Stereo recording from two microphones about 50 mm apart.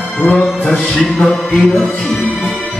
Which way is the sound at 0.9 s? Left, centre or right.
Centre.